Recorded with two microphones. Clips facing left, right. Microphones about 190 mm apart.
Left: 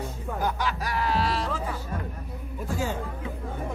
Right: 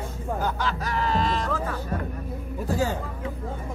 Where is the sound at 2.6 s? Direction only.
40° right (ahead or behind).